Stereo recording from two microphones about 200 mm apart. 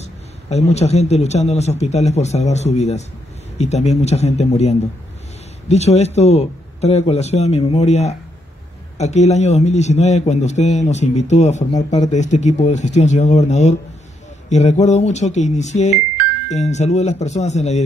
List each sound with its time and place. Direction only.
0.0 s a man's voice: 35° left (ahead or behind)